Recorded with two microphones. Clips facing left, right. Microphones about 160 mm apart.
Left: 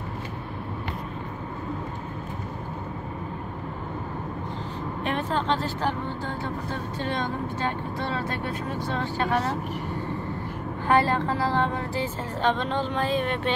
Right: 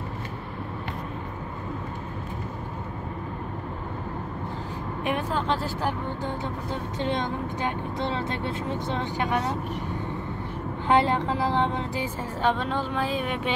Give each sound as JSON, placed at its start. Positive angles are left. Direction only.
{"t": 5.0, "sound": "speech", "side_deg": -10}
{"t": 10.9, "sound": "speech", "side_deg": -20}